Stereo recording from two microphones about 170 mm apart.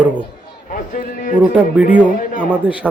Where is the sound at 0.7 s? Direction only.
50° left (ahead or behind).